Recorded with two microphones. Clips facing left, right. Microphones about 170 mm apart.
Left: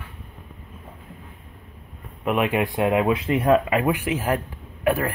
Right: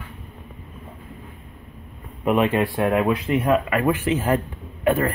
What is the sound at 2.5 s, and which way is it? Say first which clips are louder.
A man's voice: right 1 dB; 15° left (ahead or behind).